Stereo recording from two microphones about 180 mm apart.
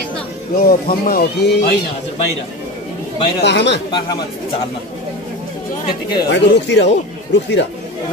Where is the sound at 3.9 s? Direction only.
25° left (ahead or behind).